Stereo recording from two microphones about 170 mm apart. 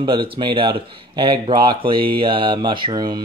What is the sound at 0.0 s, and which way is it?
Speech, 30° right (ahead or behind).